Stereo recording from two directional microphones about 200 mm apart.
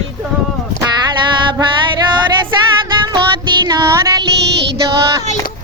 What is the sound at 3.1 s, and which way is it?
Music, 20° right (ahead or behind).